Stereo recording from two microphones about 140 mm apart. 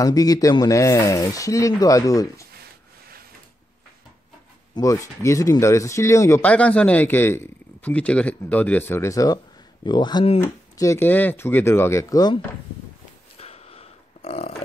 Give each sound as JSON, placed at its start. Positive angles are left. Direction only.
{"t": 0.0, "sound": "speech", "side_deg": 25}
{"t": 4.7, "sound": "speech", "side_deg": 20}
{"t": 6.4, "sound": "a man's voice", "side_deg": 10}
{"t": 10.4, "sound": "a man's voice", "side_deg": 20}
{"t": 13.4, "sound": "a sound", "side_deg": 45}